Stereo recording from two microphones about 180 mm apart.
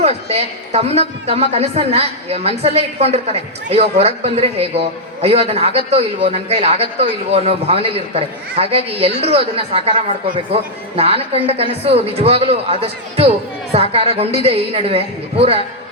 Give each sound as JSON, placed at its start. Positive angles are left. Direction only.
{"t": 0.0, "sound": "a man's voice", "side_deg": -35}